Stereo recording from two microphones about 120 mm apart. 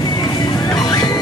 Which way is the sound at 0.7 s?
35° left (ahead or behind).